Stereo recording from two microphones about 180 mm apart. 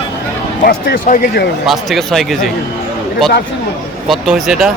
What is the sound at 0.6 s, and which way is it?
Speech, 55° left (ahead or behind).